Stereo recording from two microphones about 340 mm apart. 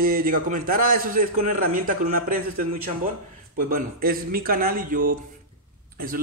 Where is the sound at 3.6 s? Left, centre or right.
Right.